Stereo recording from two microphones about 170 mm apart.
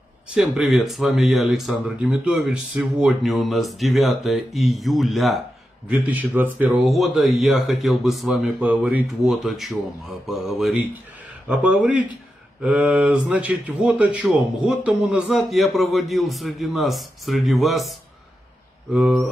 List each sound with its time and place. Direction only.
0.3 s speech: 5° right (ahead or behind)